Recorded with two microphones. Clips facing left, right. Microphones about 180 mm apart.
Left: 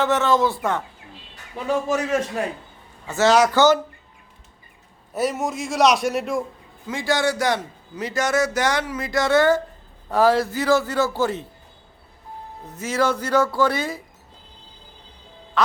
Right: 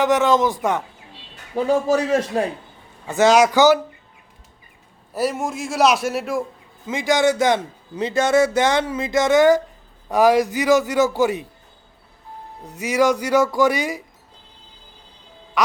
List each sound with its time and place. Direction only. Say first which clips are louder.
0.0 s a man's voice: right 2 dB; 15° right (ahead or behind)
1.5 s a man's voice: right 5 dB; 35° right (ahead or behind)
3.1 s a man's voice: right 2 dB; 15° right (ahead or behind)
5.1 s a man's voice: right 1 dB; centre (ahead or behind)
6.8 s a man's voice: right 4 dB; 20° right (ahead or behind)
12.8 s a man's voice: right 4 dB; 15° right (ahead or behind)
15.6 s quack: right 1 dB; 15° right (ahead or behind)